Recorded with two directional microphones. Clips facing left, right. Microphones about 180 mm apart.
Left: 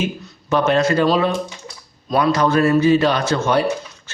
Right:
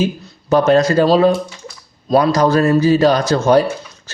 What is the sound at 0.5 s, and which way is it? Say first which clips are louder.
Speech: right 4 dB; 40° right (ahead or behind).